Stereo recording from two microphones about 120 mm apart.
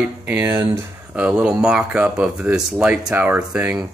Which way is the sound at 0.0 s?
15° right (ahead or behind).